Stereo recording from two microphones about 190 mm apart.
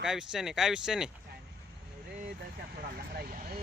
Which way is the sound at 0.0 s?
Centre (ahead or behind).